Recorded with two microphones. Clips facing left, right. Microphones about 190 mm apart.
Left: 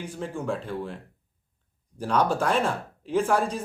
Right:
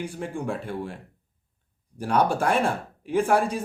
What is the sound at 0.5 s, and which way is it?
Speech, 15° right (ahead or behind).